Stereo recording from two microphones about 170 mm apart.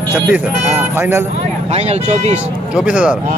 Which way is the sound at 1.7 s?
40° right (ahead or behind).